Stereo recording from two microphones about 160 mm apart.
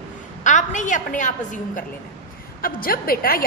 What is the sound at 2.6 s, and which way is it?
Speech, 65° left (ahead or behind).